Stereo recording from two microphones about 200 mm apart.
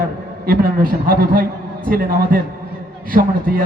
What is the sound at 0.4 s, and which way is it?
A man's voice, 45° right (ahead or behind).